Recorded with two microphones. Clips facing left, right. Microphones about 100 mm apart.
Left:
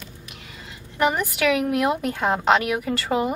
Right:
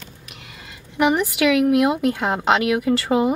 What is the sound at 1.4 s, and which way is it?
A woman's voice, 5° right (ahead or behind).